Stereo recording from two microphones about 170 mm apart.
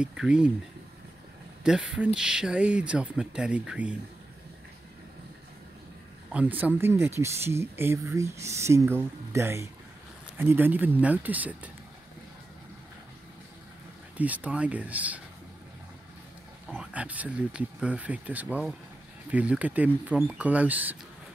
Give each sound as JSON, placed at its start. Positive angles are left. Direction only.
{"t": 0.0, "sound": "speech", "side_deg": -5}
{"t": 1.6, "sound": "speech", "side_deg": -5}
{"t": 6.3, "sound": "speech", "side_deg": -10}
{"t": 14.1, "sound": "speech", "side_deg": -10}
{"t": 16.6, "sound": "speech", "side_deg": -5}